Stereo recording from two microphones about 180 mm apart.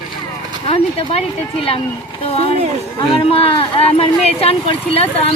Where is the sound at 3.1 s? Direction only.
35° left (ahead or behind).